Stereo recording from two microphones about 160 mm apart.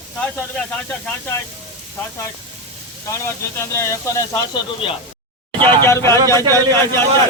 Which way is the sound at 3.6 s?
15° left (ahead or behind).